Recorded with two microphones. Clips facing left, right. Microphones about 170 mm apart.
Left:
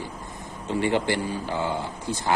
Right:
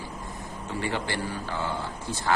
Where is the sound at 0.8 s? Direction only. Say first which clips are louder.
Left 6 dB; 20° left (ahead or behind).